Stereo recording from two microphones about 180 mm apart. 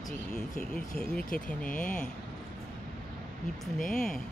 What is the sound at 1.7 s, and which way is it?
Speech, 45° left (ahead or behind).